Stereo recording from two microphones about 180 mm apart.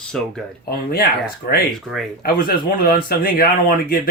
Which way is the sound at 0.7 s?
60° left (ahead or behind).